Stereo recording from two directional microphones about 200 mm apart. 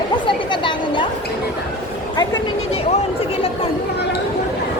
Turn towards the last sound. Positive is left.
turn(degrees=30)  # may be behind; listen again after turning